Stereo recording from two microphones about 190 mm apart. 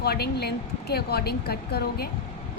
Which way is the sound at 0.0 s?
55° left (ahead or behind).